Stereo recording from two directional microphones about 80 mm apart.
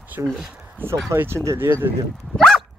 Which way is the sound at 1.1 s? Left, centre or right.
Right.